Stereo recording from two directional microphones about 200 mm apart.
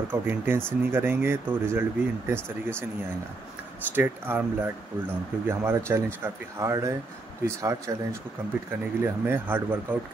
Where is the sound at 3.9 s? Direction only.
10° right (ahead or behind).